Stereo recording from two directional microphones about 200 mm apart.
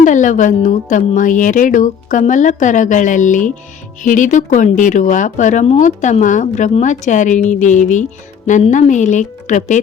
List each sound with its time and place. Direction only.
0.0 s speech: 40° left (ahead or behind)